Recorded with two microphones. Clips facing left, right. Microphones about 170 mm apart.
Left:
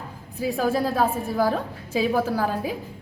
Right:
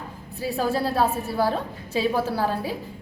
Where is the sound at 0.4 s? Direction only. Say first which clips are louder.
Left 1 dB; 15° left (ahead or behind).